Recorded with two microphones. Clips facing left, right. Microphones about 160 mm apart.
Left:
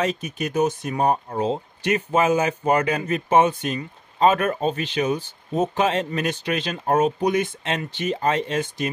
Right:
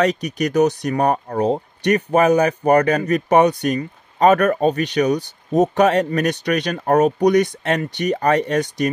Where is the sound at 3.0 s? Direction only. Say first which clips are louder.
Right 4 dB; 40° right (ahead or behind).